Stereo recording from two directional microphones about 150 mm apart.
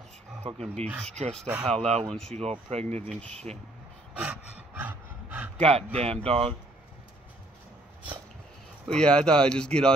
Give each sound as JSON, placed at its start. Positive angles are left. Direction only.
{"t": 0.5, "sound": "speech", "side_deg": -45}
{"t": 1.4, "sound": "speech", "side_deg": -10}
{"t": 1.7, "sound": "speech", "side_deg": 5}
{"t": 2.5, "sound": "speech", "side_deg": -45}
{"t": 4.2, "sound": "a sound", "side_deg": -10}
{"t": 5.6, "sound": "speech", "side_deg": -45}
{"t": 8.8, "sound": "speech", "side_deg": 5}